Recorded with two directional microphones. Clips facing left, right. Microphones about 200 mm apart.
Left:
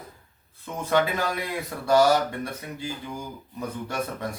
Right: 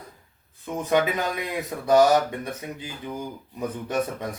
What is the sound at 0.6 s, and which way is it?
Speech, 15° right (ahead or behind).